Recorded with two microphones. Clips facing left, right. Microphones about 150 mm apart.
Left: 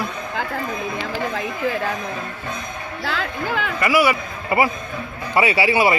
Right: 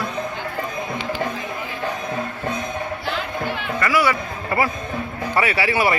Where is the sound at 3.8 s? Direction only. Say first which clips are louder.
Left 2 dB; 15° left (ahead or behind).